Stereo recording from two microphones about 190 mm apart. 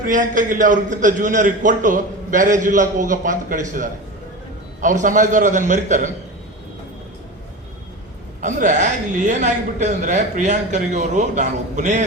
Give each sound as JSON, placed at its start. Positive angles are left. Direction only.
{"t": 0.0, "sound": "a man's voice", "side_deg": -45}
{"t": 8.4, "sound": "a woman's voice", "side_deg": -40}